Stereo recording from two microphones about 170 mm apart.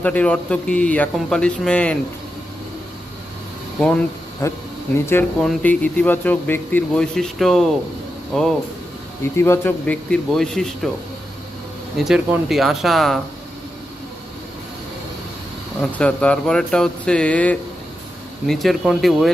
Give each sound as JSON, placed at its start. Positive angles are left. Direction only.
{"t": 0.0, "sound": "speech", "side_deg": 5}
{"t": 3.8, "sound": "speech", "side_deg": 5}
{"t": 4.4, "sound": "speech", "side_deg": 20}
{"t": 5.4, "sound": "speech", "side_deg": 5}
{"t": 9.2, "sound": "speech", "side_deg": 15}
{"t": 11.9, "sound": "speech", "side_deg": 0}
{"t": 16.0, "sound": "speech", "side_deg": 5}